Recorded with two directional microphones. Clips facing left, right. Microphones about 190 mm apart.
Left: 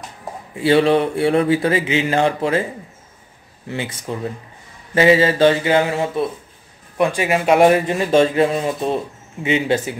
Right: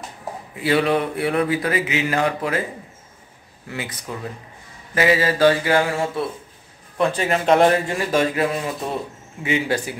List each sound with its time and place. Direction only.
0.6 s speech: 30° left (ahead or behind)
3.7 s speech: 25° left (ahead or behind)